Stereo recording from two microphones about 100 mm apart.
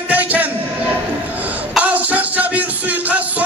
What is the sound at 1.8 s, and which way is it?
Music, 15° right (ahead or behind).